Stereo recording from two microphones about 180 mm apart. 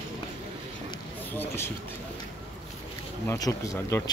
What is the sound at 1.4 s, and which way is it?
Speech, 10° left (ahead or behind).